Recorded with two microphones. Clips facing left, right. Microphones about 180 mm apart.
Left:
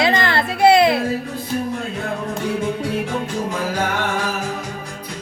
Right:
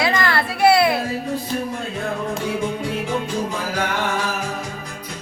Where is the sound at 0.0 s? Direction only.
25° left (ahead or behind).